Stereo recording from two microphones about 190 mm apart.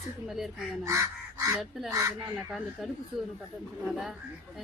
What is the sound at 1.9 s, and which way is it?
Speech, 15° right (ahead or behind).